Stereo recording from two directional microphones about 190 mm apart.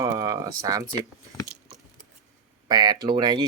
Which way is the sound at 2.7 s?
20° right (ahead or behind).